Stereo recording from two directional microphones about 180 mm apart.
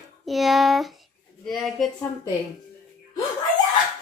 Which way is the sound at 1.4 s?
Centre (ahead or behind).